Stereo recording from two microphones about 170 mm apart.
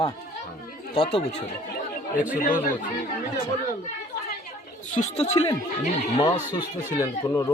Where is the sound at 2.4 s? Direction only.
50° left (ahead or behind).